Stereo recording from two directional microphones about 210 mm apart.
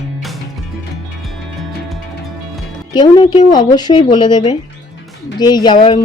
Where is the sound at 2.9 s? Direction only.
20° left (ahead or behind).